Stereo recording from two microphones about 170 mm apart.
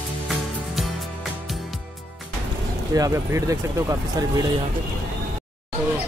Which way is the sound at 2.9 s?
20° right (ahead or behind).